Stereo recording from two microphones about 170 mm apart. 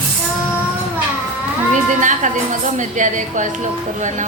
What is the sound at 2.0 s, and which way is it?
A woman's voice, 50° right (ahead or behind).